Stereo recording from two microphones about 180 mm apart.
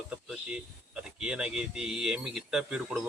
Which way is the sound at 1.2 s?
5° right (ahead or behind).